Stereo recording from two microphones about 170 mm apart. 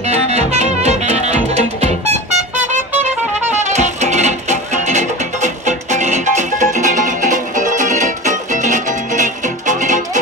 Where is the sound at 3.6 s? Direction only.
45° right (ahead or behind).